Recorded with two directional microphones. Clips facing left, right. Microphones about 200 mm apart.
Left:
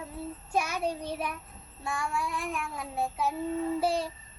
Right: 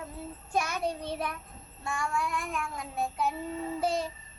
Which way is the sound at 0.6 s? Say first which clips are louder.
Left 1 dB; 10° left (ahead or behind).